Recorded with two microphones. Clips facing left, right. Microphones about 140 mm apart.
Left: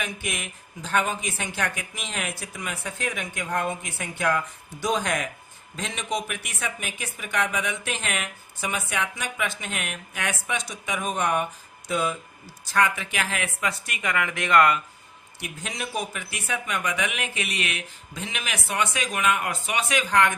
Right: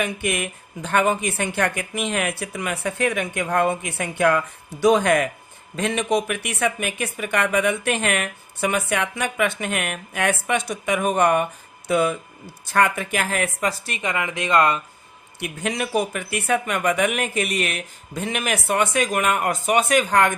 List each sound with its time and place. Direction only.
0.0 s a woman's voice: 55° right (ahead or behind); by 14.8 s 25° right (ahead or behind)
15.4 s speech: 60° right (ahead or behind)